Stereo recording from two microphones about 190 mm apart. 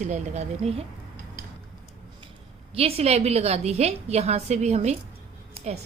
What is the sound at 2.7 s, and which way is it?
A woman's voice, 30° right (ahead or behind).